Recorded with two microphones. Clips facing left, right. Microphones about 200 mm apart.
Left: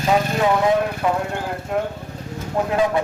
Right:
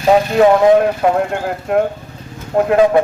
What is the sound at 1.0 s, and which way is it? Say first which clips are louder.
Speech: right 7 dB; 60° right (ahead or behind).